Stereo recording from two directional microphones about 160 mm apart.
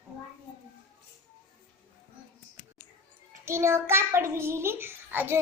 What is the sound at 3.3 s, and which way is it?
A child's voice, 15° right (ahead or behind).